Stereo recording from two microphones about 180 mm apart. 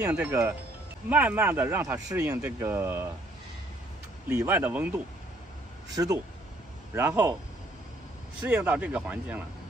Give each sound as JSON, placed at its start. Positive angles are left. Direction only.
{"t": 0.0, "sound": "speech", "side_deg": -10}
{"t": 4.4, "sound": "speech", "side_deg": -10}
{"t": 8.4, "sound": "speech", "side_deg": -5}